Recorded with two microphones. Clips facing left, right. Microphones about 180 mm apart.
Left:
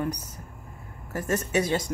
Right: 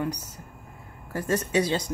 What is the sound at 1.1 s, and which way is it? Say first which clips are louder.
Speech: right 1 dB; 30° right (ahead or behind).